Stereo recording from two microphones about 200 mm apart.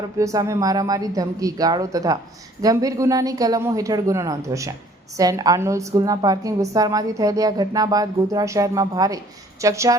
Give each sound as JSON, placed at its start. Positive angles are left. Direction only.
{"t": 0.2, "sound": "a woman's voice", "side_deg": -15}